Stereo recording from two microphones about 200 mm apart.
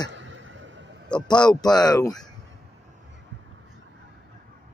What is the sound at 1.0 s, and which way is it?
Speech, 20° left (ahead or behind).